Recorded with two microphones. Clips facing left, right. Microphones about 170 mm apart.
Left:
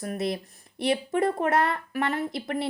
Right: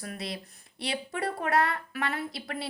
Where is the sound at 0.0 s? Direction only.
45° left (ahead or behind).